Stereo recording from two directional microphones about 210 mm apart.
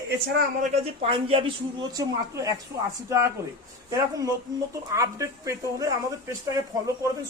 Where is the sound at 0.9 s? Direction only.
25° right (ahead or behind).